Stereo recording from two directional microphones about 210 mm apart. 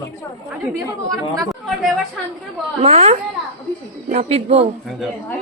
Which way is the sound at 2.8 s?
30° right (ahead or behind).